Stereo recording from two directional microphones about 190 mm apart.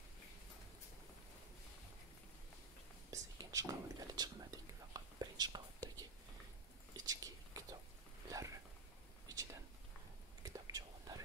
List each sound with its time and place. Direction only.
3.1 s whispering: 15° right (ahead or behind)
7.1 s whispering: 20° right (ahead or behind)
8.3 s a sound: 15° right (ahead or behind)
10.4 s whispering: 20° right (ahead or behind)